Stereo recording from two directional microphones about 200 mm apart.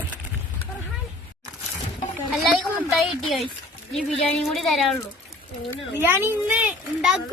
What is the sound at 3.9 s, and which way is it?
Speech, centre (ahead or behind).